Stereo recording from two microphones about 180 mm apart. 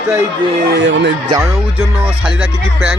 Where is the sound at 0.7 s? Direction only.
85° right.